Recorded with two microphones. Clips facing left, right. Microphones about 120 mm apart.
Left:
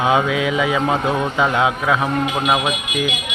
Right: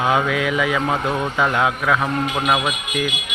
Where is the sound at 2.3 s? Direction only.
5° left (ahead or behind).